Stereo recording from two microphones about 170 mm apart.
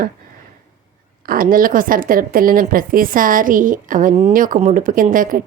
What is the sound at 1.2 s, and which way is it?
A woman's voice, 60° right (ahead or behind).